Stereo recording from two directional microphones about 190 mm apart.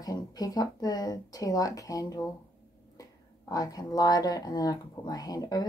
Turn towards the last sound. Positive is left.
turn(degrees=20)  # may be behind; listen again after turning